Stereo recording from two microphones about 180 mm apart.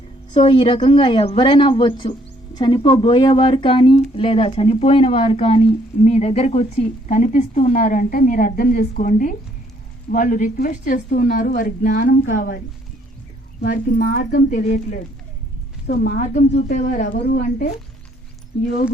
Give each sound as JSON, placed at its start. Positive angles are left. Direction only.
{"t": 0.3, "sound": "speech", "side_deg": 30}
{"t": 13.6, "sound": "speech", "side_deg": 55}